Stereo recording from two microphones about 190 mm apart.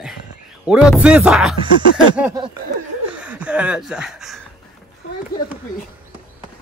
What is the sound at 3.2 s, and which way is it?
Speech, 5° right (ahead or behind).